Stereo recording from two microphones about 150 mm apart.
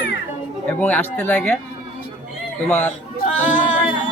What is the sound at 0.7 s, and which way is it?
Speech, 10° left (ahead or behind).